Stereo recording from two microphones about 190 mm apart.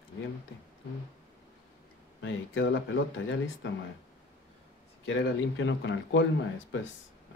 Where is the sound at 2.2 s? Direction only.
70° left (ahead or behind).